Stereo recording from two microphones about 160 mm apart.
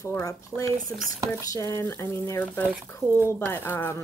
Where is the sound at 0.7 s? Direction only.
60° right (ahead or behind).